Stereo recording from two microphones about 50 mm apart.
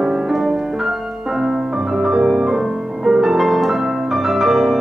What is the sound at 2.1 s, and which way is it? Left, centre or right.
Music, centre.